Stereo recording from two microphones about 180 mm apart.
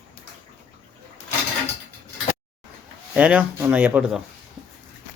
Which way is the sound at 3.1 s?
10° right (ahead or behind).